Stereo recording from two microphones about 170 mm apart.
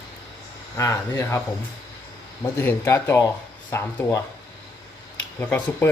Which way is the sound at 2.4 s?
15° left (ahead or behind).